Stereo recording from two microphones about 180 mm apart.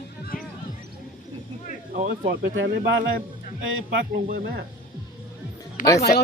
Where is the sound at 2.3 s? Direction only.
80° right.